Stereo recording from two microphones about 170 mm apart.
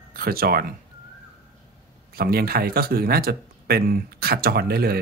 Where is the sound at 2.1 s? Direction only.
65° right (ahead or behind).